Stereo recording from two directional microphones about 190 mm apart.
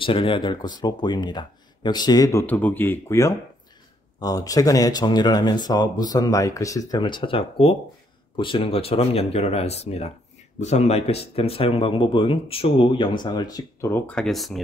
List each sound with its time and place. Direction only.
0.0 s speech: 30° left (ahead or behind); by 14.6 s centre (ahead or behind)